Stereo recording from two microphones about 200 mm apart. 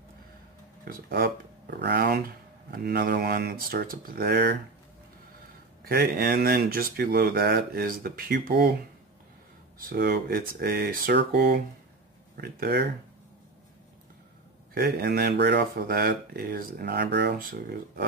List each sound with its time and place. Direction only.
0.8 s speech: 50° right (ahead or behind)
5.9 s speech: 50° right (ahead or behind)
9.8 s speech: 50° right (ahead or behind)
14.7 s speech: 50° right (ahead or behind)